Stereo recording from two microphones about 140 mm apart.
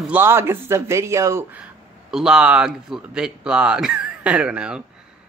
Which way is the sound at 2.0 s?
5° right (ahead or behind).